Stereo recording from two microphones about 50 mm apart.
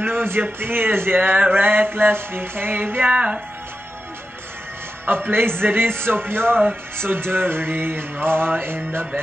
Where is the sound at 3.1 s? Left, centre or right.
Right.